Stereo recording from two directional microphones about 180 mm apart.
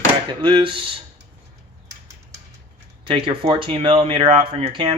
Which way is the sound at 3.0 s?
30° right (ahead or behind).